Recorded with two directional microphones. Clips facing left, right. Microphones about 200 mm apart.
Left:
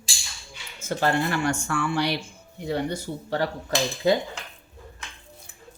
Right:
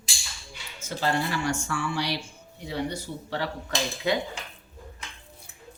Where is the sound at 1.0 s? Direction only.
55° left (ahead or behind).